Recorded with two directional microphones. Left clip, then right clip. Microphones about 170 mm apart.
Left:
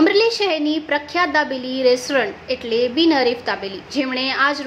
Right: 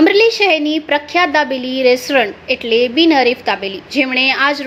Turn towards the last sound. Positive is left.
turn(degrees=-20)  # may be behind; listen again after turning